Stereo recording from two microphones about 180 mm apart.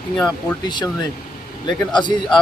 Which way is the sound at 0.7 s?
25° left (ahead or behind).